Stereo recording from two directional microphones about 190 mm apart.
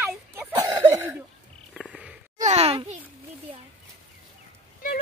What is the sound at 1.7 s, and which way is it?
Frog, centre (ahead or behind).